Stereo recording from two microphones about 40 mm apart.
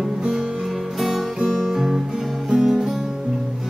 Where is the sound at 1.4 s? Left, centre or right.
Centre.